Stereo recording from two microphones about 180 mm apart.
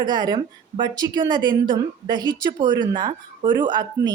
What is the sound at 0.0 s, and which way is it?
A woman's voice, 25° right (ahead or behind).